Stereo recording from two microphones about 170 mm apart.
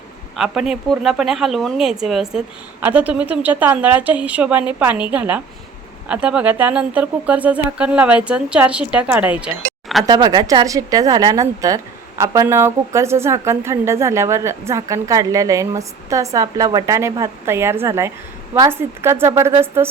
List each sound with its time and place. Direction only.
0.3 s speech: 5° right (ahead or behind)
10.1 s a woman's voice: 25° right (ahead or behind)